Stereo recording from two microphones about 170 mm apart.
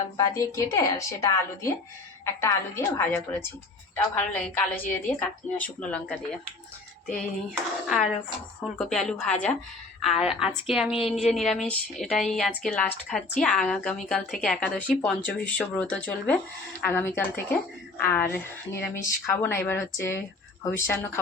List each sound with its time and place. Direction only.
0.2 s a woman's voice: 20° left (ahead or behind)
8.8 s a woman's voice: centre (ahead or behind)